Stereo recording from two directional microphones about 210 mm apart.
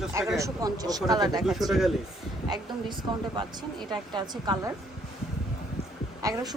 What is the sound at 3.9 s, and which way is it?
Speech, 20° right (ahead or behind).